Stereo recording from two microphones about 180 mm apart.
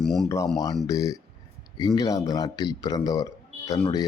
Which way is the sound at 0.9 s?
20° left (ahead or behind).